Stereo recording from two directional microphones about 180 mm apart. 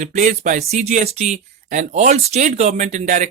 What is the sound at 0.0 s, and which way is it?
Speech, 45° right (ahead or behind).